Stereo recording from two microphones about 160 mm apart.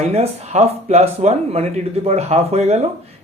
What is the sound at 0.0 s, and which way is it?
Speech, 40° right (ahead or behind).